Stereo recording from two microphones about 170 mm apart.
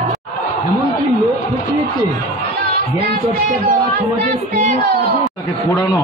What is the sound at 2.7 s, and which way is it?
Speech, 70° right (ahead or behind).